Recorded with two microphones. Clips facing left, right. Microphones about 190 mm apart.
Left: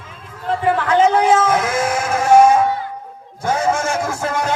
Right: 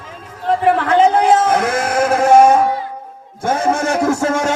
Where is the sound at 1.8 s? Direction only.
60° right (ahead or behind).